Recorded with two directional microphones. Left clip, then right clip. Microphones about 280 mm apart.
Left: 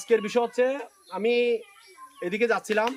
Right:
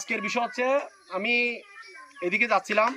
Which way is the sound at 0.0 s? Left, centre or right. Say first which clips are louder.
Left 4 dB; centre.